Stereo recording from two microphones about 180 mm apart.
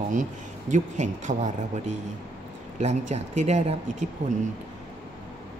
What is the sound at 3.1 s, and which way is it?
Speech, 40° right (ahead or behind).